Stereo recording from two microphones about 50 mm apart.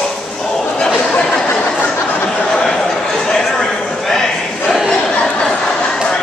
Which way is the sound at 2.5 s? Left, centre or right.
Centre.